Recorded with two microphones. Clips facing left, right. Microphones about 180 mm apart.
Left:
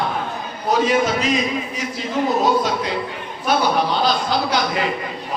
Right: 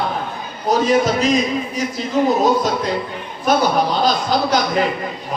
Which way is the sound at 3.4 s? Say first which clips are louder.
Right 2 dB; 45° right (ahead or behind).